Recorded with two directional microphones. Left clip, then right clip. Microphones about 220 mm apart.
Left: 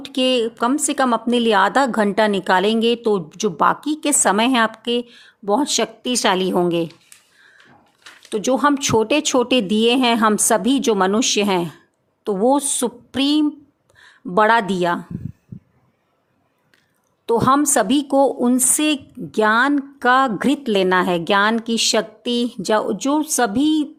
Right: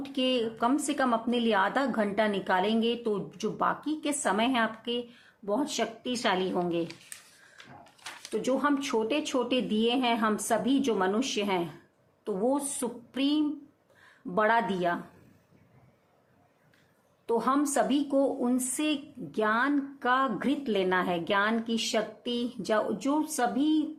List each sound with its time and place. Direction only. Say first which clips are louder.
0.0 s a woman's voice: left 10 dB; 50° left (ahead or behind)
8.3 s a woman's voice: left 10 dB; 50° left (ahead or behind)
17.2 s a woman's voice: left 11 dB; 50° left (ahead or behind)